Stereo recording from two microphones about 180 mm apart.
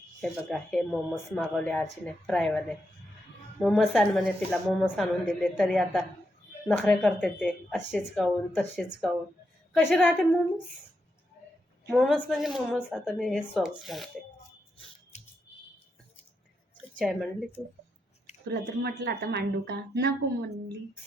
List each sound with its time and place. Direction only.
0.2 s a woman's voice: centre (ahead or behind)
11.9 s speech: 5° right (ahead or behind)
15.1 s a sound: 40° left (ahead or behind)
17.0 s speech: 5° left (ahead or behind)
18.4 s speech: 65° right (ahead or behind)